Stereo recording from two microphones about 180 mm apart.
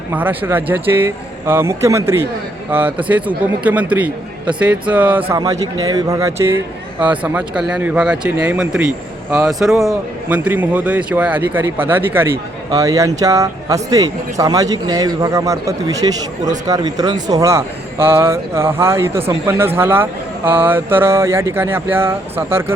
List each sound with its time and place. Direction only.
0.1 s speech: 10° right (ahead or behind)
5.3 s speech: 20° right (ahead or behind)